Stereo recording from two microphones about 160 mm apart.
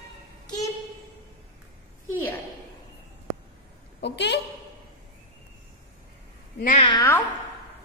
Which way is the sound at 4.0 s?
90° left.